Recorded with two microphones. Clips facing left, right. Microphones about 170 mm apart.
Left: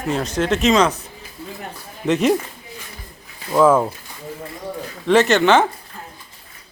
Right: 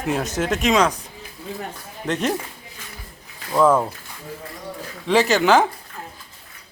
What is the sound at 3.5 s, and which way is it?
Speech, 5° left (ahead or behind).